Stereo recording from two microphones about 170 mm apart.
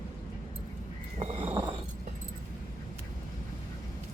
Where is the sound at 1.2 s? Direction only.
40° right (ahead or behind).